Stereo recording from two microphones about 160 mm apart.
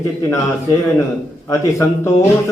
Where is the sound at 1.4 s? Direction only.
20° left (ahead or behind).